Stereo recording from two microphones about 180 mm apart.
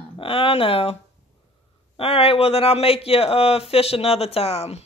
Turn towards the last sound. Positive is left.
turn(degrees=35)  # may be behind; listen again after turning